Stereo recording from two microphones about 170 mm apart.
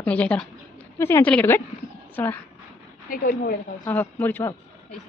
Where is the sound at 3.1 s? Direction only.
55° left (ahead or behind).